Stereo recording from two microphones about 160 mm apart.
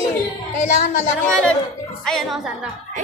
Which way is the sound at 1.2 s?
5° left (ahead or behind).